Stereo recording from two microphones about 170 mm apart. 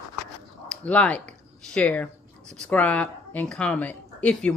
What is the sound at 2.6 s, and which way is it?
Speech, 10° left (ahead or behind).